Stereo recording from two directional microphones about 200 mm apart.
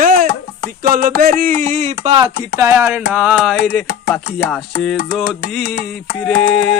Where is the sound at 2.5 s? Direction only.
15° right (ahead or behind).